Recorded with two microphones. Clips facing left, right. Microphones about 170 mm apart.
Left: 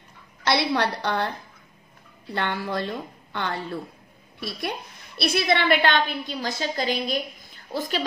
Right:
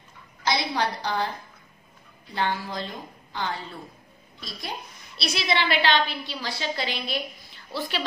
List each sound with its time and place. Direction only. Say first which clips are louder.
0.5 s a woman's voice: left 3 dB; 65° left (ahead or behind); by 8.0 s 45° left (ahead or behind)